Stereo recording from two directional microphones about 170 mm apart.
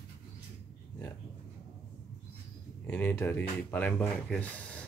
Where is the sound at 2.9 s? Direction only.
10° left (ahead or behind).